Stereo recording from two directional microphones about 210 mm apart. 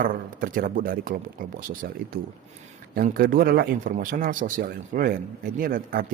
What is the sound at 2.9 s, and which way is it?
A man's voice, 45° right (ahead or behind).